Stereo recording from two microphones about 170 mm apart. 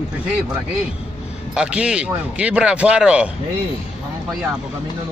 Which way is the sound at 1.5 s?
5° right (ahead or behind).